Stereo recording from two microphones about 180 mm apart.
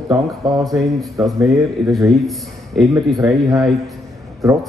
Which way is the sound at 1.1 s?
20° right (ahead or behind).